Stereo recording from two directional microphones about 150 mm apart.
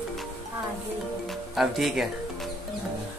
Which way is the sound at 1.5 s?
Centre (ahead or behind).